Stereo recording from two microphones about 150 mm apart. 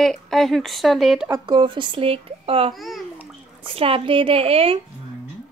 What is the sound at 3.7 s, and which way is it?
Speech, 40° right (ahead or behind).